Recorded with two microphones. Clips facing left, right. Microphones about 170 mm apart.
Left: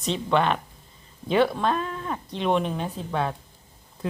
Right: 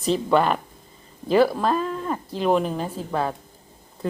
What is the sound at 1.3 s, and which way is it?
Speech, centre (ahead or behind).